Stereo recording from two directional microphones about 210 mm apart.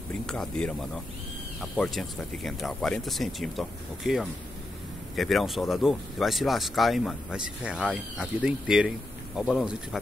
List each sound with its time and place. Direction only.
0.1 s speech: 5° left (ahead or behind)